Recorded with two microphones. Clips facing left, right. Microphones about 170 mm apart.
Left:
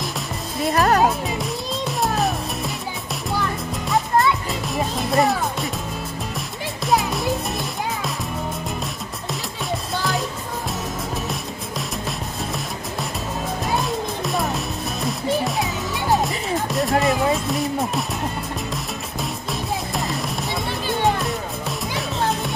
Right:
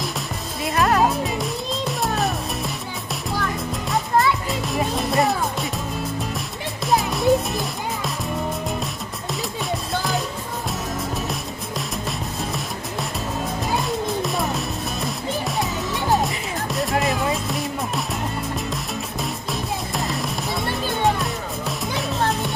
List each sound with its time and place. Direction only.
0.7 s music: 40° left (ahead or behind)
1.3 s music: centre (ahead or behind)
3.9 s music: centre (ahead or behind)
13.7 s music: centre (ahead or behind)